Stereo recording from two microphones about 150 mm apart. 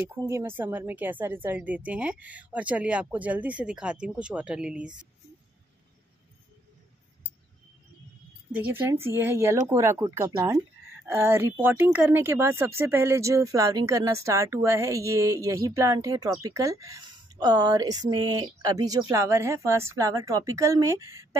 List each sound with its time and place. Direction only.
0.1 s a woman's voice: 20° right (ahead or behind)
8.5 s a woman's voice: 10° right (ahead or behind)